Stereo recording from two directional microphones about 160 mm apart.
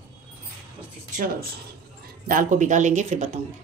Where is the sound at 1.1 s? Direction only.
55° right (ahead or behind).